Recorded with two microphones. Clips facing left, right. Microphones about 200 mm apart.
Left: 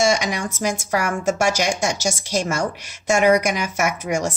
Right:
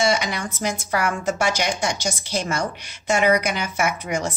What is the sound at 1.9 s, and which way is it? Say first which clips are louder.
Speech: left 3 dB; 10° left (ahead or behind).